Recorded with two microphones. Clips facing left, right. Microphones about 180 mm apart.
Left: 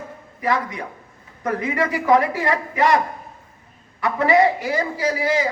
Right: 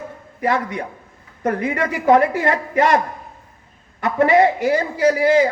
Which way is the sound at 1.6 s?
50° right (ahead or behind).